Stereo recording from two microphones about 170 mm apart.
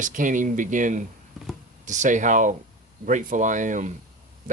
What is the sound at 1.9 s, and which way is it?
Speech, 45° right (ahead or behind).